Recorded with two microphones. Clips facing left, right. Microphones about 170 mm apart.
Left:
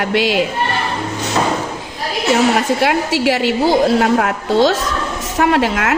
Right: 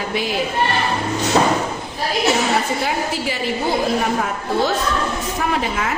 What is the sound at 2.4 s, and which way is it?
A woman's voice, 80° left.